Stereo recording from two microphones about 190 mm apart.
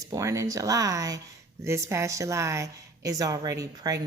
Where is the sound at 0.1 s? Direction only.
15° right (ahead or behind).